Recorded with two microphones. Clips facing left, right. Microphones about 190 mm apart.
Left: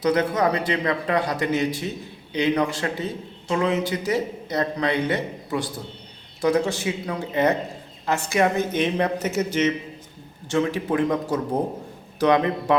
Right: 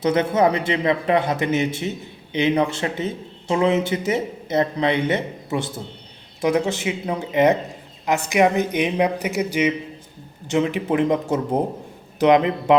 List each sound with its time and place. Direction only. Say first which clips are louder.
0.0 s speech: right 3 dB; 25° right (ahead or behind)